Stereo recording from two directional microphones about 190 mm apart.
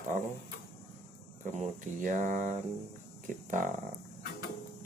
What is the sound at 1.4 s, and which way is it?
Speech, 40° right (ahead or behind).